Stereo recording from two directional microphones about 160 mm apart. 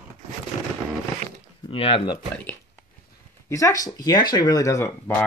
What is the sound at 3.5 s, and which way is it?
Speech, 20° left (ahead or behind).